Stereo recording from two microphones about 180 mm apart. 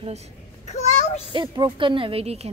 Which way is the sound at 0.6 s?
40° left (ahead or behind).